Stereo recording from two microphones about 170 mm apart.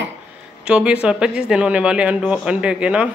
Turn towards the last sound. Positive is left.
turn(degrees=-5)  # may be behind; listen again after turning